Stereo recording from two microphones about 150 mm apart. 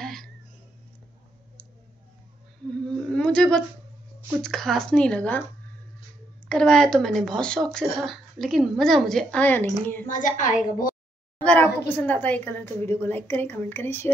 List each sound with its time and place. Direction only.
0.0 s a sound: centre (ahead or behind)
2.9 s a sound: 5° left (ahead or behind)
4.4 s speech: centre (ahead or behind)
6.5 s speech: 5° left (ahead or behind)
10.0 s a woman's voice: 60° left (ahead or behind)
11.4 s a woman's voice: 10° left (ahead or behind)